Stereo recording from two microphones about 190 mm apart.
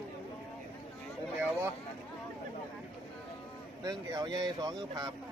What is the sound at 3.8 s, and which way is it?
Speech, 20° right (ahead or behind).